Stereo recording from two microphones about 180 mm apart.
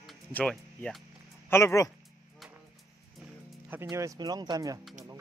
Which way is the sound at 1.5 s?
15° left (ahead or behind).